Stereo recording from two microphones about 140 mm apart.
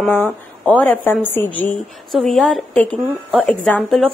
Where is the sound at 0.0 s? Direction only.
10° left (ahead or behind).